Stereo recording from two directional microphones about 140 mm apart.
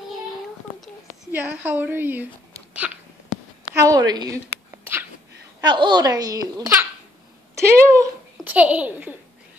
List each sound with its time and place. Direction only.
1.3 s a woman's voice: 15° right (ahead or behind)
2.8 s a sound: 5° right (ahead or behind)
3.7 s a child's voice: 25° right (ahead or behind)
4.6 s dog: 15° right (ahead or behind)
5.6 s a child's voice: 35° right (ahead or behind)
7.5 s a sound: 20° right (ahead or behind)
8.5 s a woman's voice: 10° right (ahead or behind)